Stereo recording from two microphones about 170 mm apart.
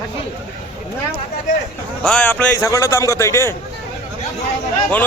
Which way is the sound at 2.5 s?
20° left (ahead or behind).